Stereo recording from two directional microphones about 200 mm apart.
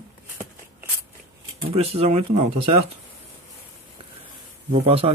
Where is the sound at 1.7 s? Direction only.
30° right (ahead or behind).